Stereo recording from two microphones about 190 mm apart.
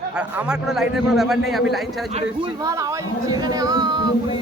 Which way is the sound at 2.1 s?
35° right (ahead or behind).